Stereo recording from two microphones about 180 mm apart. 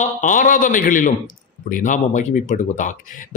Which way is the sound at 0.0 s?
45° left (ahead or behind).